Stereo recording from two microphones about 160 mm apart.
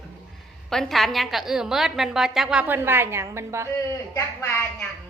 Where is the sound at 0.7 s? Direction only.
Centre (ahead or behind); by 3.7 s 15° right (ahead or behind).